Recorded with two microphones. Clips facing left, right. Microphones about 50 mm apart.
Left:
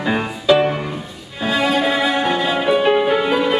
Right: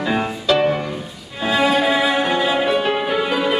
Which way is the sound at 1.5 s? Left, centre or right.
Centre.